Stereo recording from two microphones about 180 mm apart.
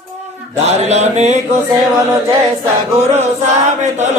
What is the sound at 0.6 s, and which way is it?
Mantra, 35° right (ahead or behind).